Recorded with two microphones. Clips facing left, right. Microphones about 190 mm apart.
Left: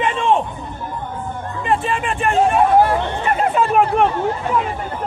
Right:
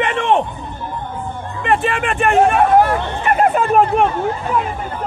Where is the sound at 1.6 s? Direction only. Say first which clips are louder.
Right 2 dB; 70° right (ahead or behind); by 3.8 s 55° right (ahead or behind).